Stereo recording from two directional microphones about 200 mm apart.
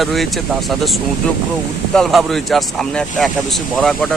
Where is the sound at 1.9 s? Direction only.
Centre (ahead or behind).